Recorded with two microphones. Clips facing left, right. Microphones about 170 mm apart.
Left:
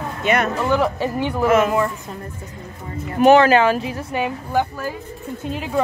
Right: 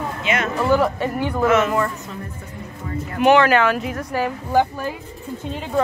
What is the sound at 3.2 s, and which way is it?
Speech, 40° left (ahead or behind).